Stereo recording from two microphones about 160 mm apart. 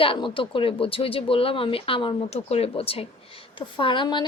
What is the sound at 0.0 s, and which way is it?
Speech, 35° left (ahead or behind).